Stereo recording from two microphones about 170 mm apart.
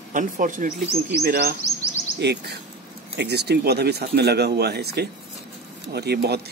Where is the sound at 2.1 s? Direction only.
75° right (ahead or behind).